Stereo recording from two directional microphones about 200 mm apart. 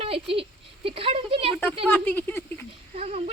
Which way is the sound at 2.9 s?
30° right (ahead or behind).